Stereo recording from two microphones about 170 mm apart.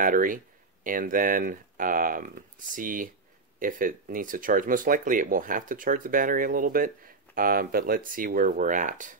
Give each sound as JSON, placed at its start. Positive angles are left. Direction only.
{"t": 0.0, "sound": "speech", "side_deg": -55}